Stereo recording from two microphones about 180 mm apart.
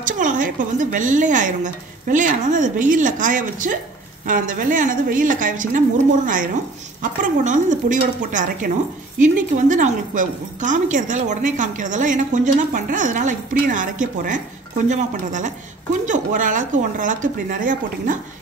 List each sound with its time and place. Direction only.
0.0 s a woman's voice: 45° right (ahead or behind)